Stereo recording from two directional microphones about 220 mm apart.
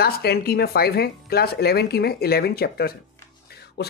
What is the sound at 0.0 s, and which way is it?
Speech, 45° left (ahead or behind).